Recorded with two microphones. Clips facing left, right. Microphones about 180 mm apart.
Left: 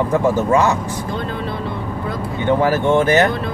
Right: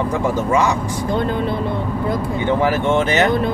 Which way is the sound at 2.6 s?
20° right (ahead or behind).